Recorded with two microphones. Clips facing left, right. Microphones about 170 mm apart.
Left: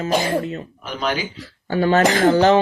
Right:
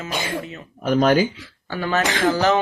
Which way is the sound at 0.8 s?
50° right (ahead or behind).